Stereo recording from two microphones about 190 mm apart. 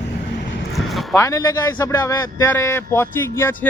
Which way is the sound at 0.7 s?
Centre (ahead or behind).